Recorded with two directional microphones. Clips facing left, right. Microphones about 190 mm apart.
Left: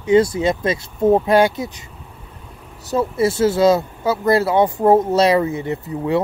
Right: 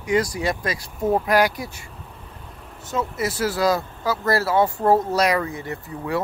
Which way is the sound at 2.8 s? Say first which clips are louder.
Left 7 dB; 35° left (ahead or behind).